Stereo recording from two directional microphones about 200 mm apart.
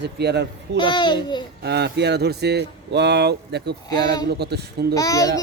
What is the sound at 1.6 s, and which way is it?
Speech, 55° right (ahead or behind).